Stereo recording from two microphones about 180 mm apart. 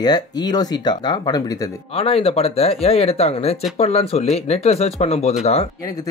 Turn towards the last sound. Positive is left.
turn(degrees=35)  # may be behind; listen again after turning